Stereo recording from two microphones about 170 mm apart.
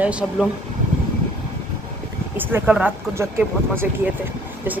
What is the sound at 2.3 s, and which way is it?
Speech, 10° right (ahead or behind).